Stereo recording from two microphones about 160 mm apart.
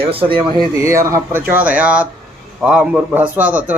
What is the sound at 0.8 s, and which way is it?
A man's voice, 20° right (ahead or behind).